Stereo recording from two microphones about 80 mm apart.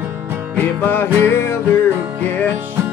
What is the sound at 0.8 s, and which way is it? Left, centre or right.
Music, left.